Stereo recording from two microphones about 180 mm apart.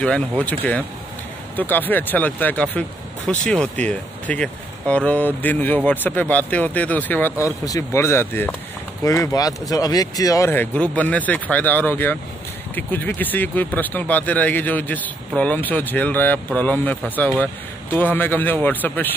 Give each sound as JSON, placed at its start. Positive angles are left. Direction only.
{"t": 0.0, "sound": "speech", "side_deg": 5}